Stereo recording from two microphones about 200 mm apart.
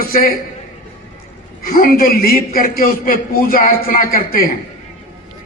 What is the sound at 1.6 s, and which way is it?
A man's voice, 45° left (ahead or behind).